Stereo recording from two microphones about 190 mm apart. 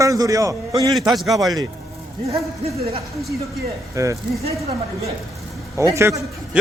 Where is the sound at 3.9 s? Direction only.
15° right (ahead or behind).